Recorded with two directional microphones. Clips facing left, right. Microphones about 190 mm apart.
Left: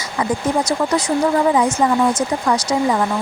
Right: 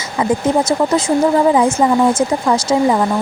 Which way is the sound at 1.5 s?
25° right (ahead or behind).